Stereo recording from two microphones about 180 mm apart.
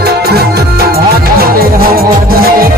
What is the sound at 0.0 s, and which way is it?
Music, 60° right (ahead or behind).